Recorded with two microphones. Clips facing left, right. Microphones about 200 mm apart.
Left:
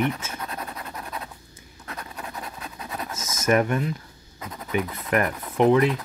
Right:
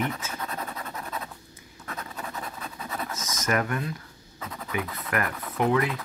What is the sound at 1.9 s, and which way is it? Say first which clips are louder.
Scratch: even; 15° left (ahead or behind).